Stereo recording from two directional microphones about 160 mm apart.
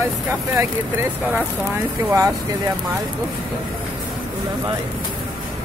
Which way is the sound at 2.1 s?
25° right (ahead or behind).